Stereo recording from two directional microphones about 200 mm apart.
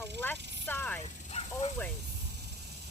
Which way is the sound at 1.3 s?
35° left (ahead or behind).